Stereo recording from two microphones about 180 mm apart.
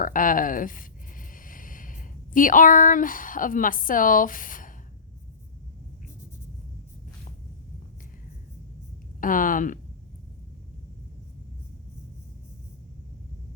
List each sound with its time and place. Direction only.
0.0 s speech: 50° left (ahead or behind)
9.2 s speech: 50° left (ahead or behind)